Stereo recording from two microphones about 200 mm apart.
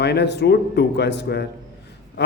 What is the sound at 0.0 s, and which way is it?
A man's voice, 55° left (ahead or behind).